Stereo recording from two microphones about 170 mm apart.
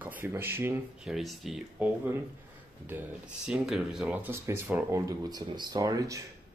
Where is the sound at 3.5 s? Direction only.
5° right (ahead or behind).